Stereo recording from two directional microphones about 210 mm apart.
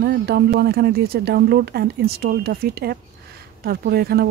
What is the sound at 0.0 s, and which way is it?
Speech, 50° right (ahead or behind).